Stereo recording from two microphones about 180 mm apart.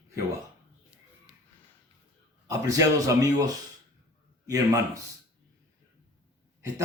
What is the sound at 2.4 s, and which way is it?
Speech, 20° right (ahead or behind).